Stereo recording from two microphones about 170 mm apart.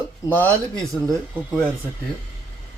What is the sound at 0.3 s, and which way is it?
Speech, 10° left (ahead or behind).